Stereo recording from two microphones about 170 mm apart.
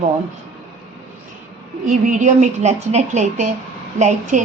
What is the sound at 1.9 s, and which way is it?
A woman's voice, 45° right (ahead or behind).